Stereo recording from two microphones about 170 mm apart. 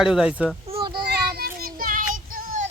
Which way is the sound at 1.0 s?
65° right (ahead or behind).